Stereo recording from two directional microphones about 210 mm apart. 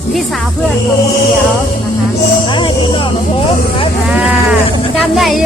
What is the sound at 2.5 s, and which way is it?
Music, 25° left (ahead or behind).